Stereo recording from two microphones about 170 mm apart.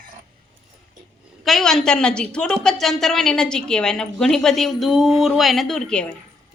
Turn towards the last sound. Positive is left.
turn(degrees=5)  # may be behind; listen again after turning